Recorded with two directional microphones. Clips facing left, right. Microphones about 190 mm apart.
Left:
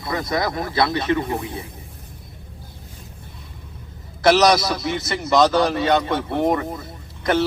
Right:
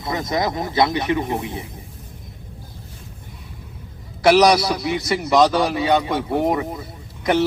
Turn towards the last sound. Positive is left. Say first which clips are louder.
# right 1 dB
turn(degrees=-15)  # may be behind; listen again after turning